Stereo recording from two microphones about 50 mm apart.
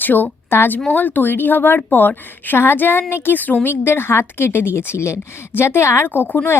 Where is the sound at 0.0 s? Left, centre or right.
Left.